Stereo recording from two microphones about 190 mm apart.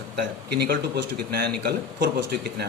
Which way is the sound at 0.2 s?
60° right (ahead or behind).